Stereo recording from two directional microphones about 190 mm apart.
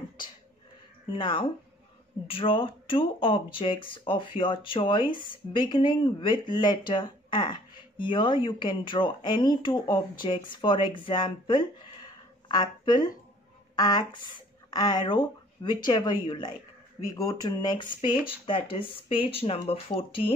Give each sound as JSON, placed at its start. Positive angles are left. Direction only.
{"t": 1.1, "sound": "speech", "side_deg": 25}